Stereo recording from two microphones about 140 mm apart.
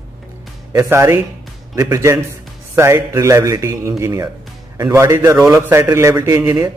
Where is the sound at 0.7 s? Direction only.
20° right (ahead or behind).